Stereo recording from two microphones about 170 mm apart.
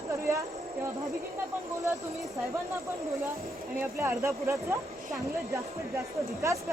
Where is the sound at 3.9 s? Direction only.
15° right (ahead or behind).